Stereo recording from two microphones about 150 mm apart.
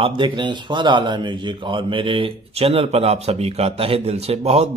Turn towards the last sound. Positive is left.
turn(degrees=-45)  # may be behind; listen again after turning